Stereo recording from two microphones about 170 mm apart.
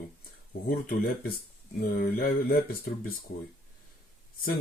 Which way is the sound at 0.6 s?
60° left (ahead or behind).